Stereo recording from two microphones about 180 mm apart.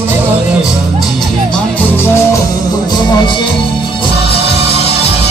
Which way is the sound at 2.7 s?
25° left (ahead or behind).